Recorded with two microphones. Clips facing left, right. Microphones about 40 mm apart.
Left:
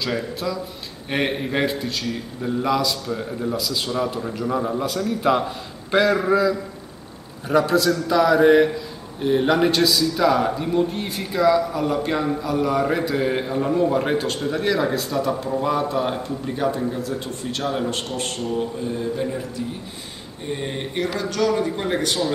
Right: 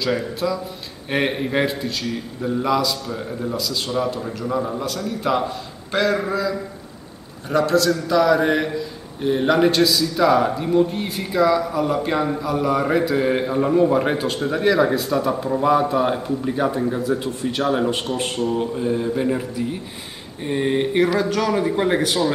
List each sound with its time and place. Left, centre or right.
0.0 s a man's voice: centre
18.5 s mantra: centre
20.4 s mantra: centre
21.2 s a man's voice: centre
22.0 s a man's voice: centre